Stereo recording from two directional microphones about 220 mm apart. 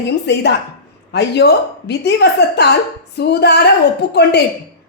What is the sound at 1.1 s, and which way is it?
A woman's voice, 50° left (ahead or behind).